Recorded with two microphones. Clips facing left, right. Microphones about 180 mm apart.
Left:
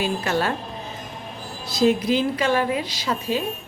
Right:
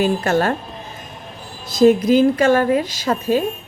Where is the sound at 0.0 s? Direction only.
45° right (ahead or behind).